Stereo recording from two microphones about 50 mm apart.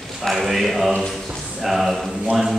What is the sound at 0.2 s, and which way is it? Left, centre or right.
Speech, centre.